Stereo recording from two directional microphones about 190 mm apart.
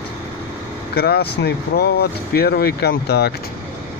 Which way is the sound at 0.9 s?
55° left (ahead or behind).